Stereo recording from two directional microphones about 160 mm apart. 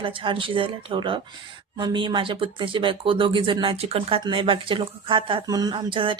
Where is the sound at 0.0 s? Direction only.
35° right (ahead or behind).